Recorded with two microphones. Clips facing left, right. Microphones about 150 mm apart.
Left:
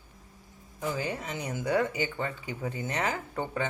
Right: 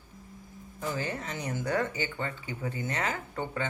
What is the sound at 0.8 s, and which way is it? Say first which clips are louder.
Speech: left 1 dB; 15° left (ahead or behind).